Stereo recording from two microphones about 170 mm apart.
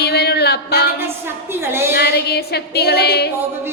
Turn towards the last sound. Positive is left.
turn(degrees=75)  # may be behind; listen again after turning